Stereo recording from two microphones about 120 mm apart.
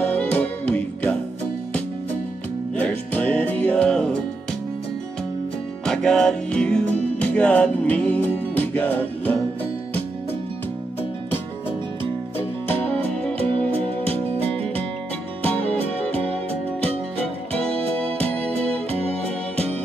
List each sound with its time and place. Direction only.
0.1 s music: 15° left (ahead or behind)
2.7 s music: 15° left (ahead or behind)
5.9 s music: 5° left (ahead or behind)
15.5 s music: 10° left (ahead or behind)
17.5 s music: 10° left (ahead or behind)